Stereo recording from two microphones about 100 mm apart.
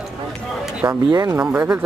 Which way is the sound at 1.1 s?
35° right (ahead or behind).